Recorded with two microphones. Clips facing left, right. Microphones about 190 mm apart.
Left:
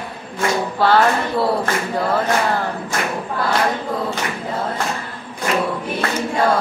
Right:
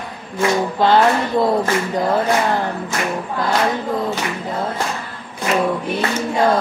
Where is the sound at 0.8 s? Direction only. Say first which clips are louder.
Right 1 dB; 20° right (ahead or behind).